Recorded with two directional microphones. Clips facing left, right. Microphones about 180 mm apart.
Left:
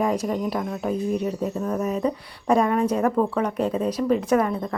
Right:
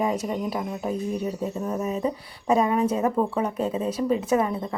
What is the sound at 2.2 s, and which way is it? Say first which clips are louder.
Speech: even; 25° right (ahead or behind).